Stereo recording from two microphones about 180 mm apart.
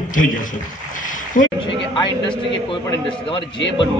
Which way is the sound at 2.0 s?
25° left (ahead or behind).